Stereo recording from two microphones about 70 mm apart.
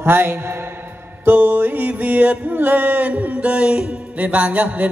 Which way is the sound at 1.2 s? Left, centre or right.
Right.